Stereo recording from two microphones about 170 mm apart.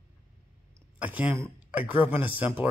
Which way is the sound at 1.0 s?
10° right (ahead or behind).